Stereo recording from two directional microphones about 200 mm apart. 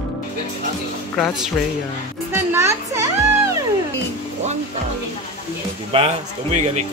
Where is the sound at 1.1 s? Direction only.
5° left (ahead or behind).